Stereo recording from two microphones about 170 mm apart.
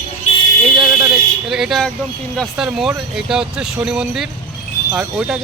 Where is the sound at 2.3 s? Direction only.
5° left (ahead or behind).